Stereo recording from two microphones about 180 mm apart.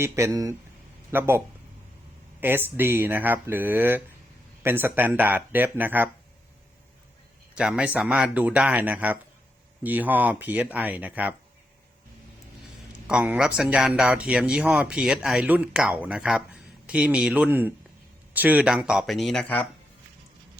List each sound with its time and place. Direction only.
0.0 s speech: 15° right (ahead or behind)
2.4 s speech: 10° right (ahead or behind)
7.5 s speech: 5° right (ahead or behind)
13.1 s speech: 5° right (ahead or behind)